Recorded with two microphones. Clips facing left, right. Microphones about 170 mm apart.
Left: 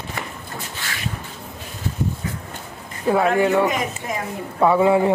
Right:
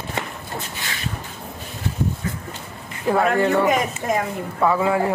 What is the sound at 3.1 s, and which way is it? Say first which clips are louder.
Speech: left 1 dB; 10° left (ahead or behind).